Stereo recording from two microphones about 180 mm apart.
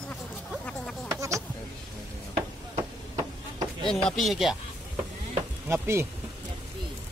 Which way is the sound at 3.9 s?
5° left (ahead or behind).